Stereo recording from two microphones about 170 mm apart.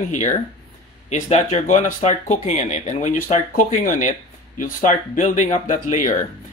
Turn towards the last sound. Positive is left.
turn(degrees=50)  # may be behind; listen again after turning